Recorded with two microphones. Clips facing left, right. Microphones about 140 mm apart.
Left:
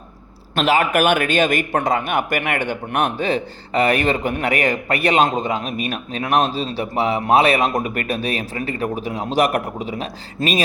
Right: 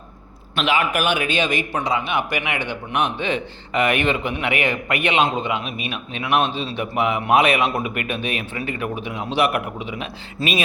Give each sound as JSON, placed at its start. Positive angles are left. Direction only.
{"t": 0.5, "sound": "a man's voice", "side_deg": 40}